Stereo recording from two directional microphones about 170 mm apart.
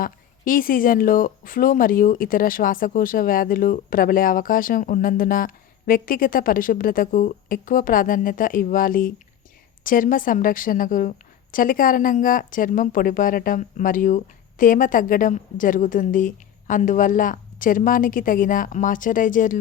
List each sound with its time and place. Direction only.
0.0 s a woman's voice: 55° left (ahead or behind)